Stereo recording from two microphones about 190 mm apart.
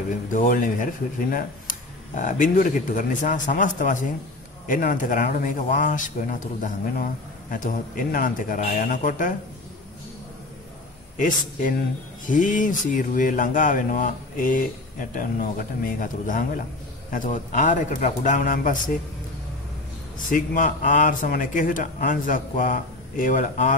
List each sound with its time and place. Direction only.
0.3 s speech: 45° left (ahead or behind)
11.1 s speech: 45° left (ahead or behind)
20.2 s speech: 45° left (ahead or behind)